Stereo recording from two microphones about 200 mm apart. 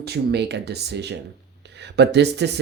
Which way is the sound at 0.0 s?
55° right (ahead or behind).